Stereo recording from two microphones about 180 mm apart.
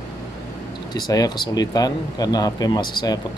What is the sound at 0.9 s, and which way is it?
Speech, 20° left (ahead or behind).